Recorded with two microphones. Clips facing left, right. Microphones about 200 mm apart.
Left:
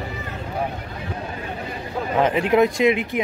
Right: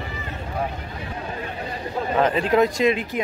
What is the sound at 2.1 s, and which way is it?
Speech, 15° left (ahead or behind).